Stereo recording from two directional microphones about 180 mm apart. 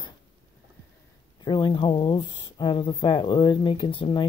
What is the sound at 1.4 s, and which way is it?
Speech, 25° left (ahead or behind).